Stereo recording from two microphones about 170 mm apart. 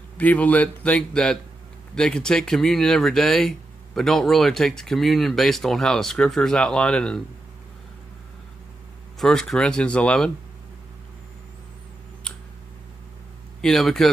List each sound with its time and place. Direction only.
0.2 s speech: 10° left (ahead or behind)
9.2 s speech: centre (ahead or behind)
13.6 s speech: centre (ahead or behind)